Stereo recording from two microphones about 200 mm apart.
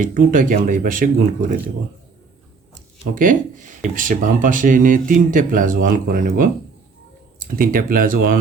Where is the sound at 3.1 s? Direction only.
40° right (ahead or behind).